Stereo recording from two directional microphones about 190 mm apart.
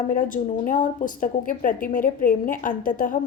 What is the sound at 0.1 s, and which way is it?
A woman's voice, 45° left (ahead or behind).